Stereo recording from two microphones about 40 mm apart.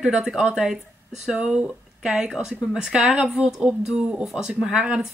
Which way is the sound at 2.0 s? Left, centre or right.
Centre.